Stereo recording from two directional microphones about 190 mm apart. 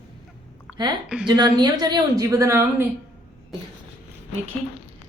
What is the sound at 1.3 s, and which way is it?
A woman's voice, 20° right (ahead or behind).